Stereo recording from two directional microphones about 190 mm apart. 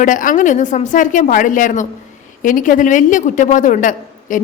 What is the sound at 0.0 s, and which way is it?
A woman's voice, 45° left (ahead or behind).